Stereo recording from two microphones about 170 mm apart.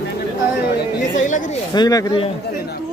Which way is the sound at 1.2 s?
50° left (ahead or behind).